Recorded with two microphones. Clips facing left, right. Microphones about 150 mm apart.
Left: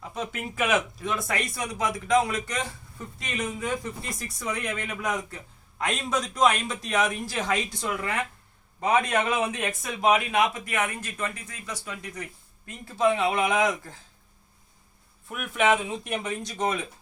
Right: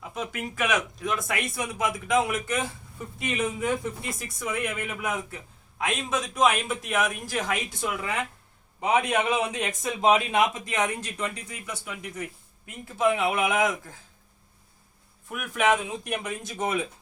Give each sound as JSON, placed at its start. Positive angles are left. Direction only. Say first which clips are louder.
{"t": 0.1, "sound": "a man's voice", "louder": "even", "side_deg": 0}
{"t": 15.3, "sound": "speech", "louder": "left 1 dB", "side_deg": 0}